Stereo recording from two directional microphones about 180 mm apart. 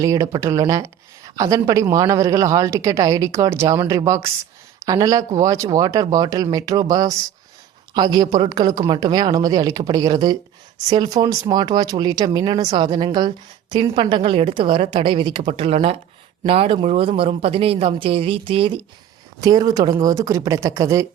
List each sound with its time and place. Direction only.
0.0 s a woman's voice: 15° right (ahead or behind)